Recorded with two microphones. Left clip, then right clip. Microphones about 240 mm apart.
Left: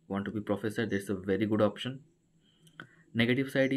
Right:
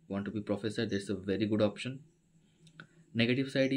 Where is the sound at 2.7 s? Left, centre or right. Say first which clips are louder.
Left 3 dB; centre.